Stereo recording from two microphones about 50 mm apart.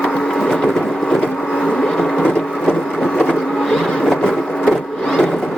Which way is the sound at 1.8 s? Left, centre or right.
Centre.